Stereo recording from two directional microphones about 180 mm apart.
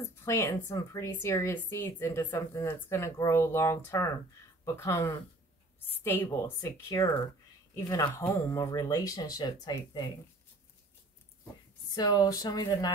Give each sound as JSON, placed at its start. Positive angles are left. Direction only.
{"t": 0.2, "sound": "a woman's voice", "side_deg": 15}
{"t": 11.9, "sound": "speech", "side_deg": 20}